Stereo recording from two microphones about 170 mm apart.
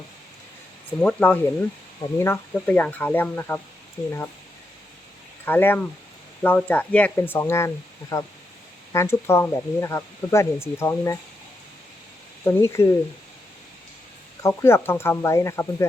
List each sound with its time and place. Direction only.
1.0 s speech: 10° left (ahead or behind)
5.5 s speech: 10° left (ahead or behind)
12.5 s speech: 15° left (ahead or behind)
14.4 s speech: 15° left (ahead or behind)